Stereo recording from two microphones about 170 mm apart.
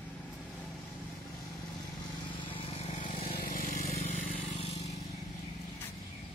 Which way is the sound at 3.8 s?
40° left (ahead or behind).